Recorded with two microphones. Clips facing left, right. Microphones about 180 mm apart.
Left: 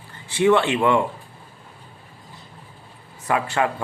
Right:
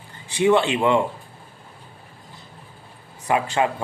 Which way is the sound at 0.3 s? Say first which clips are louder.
Even; 20° right (ahead or behind).